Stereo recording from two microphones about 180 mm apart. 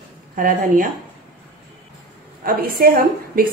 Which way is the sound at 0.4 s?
50° right (ahead or behind).